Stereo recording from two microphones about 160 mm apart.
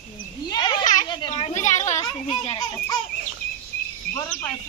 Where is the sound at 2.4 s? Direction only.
35° left (ahead or behind).